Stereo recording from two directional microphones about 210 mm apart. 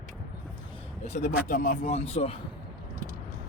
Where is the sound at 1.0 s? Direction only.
30° left (ahead or behind).